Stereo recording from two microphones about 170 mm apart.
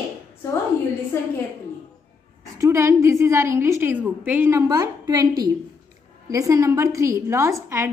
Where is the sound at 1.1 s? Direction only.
15° left (ahead or behind).